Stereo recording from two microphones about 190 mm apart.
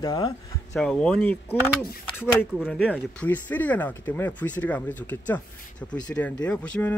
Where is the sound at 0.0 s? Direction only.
20° left (ahead or behind).